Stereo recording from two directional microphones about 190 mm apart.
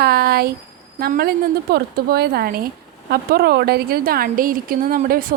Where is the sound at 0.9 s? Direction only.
55° right (ahead or behind).